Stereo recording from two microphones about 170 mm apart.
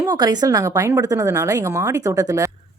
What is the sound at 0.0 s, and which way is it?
Speech, 25° right (ahead or behind).